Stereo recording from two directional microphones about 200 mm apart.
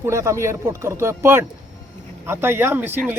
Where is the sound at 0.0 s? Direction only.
15° right (ahead or behind).